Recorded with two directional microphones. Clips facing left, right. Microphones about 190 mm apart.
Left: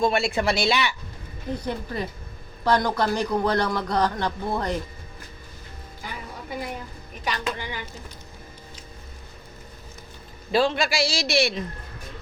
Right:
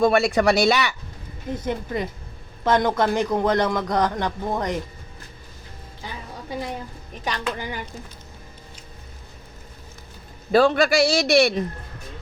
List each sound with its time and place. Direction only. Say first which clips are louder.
0.0 s speech: right 5 dB; 50° right (ahead or behind)
1.5 s speech: right 4 dB; 20° right (ahead or behind)
7.3 s speech: right 2 dB; 45° right (ahead or behind)
10.5 s a man's voice: right 5 dB; 55° right (ahead or behind)